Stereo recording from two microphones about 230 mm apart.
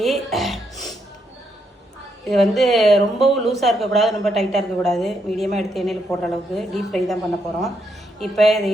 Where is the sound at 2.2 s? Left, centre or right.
Centre.